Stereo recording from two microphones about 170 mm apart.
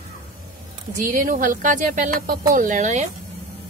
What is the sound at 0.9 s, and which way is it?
Speech, 55° right (ahead or behind).